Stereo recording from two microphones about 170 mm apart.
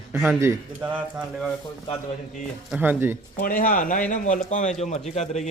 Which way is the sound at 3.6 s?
55° left (ahead or behind).